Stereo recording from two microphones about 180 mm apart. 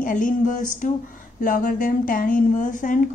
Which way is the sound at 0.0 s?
50° left (ahead or behind).